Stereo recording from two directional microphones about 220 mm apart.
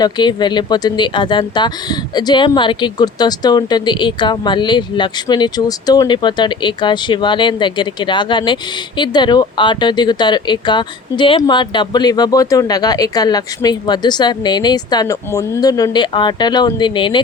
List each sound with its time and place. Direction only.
0.0 s speech: 20° left (ahead or behind)